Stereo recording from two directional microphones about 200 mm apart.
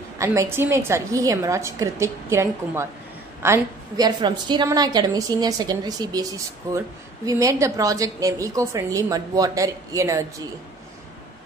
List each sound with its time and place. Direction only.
0.2 s a woman's voice: 15° right (ahead or behind)